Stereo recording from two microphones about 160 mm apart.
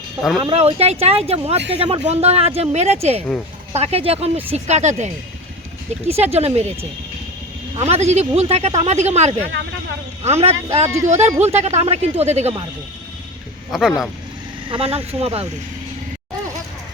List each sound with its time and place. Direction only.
0.2 s speech: centre (ahead or behind)
0.5 s speech: 40° right (ahead or behind)
7.8 s speech: 40° right (ahead or behind)
13.7 s speech: centre (ahead or behind)
14.7 s speech: 35° right (ahead or behind)